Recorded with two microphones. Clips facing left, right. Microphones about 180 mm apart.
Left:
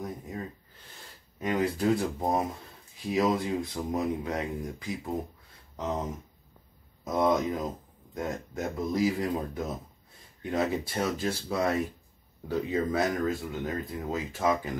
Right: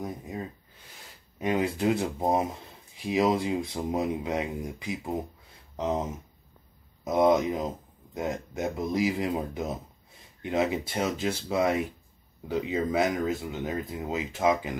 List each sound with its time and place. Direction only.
1.4 s speech: 20° right (ahead or behind)
7.1 s speech: 20° right (ahead or behind)